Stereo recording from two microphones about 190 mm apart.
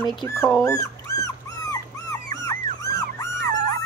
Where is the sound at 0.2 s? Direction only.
15° left (ahead or behind).